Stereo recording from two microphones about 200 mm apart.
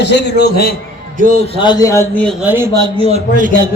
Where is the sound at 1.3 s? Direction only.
30° left (ahead or behind); by 2.2 s 15° left (ahead or behind).